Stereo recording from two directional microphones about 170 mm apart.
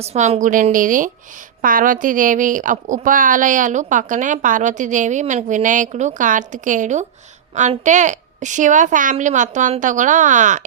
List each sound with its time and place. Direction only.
0.0 s a woman's voice: 40° right (ahead or behind)